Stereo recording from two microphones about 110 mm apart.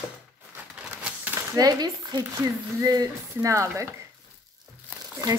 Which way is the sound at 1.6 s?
35° right (ahead or behind).